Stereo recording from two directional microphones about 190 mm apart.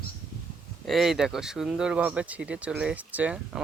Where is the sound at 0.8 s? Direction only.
Centre (ahead or behind).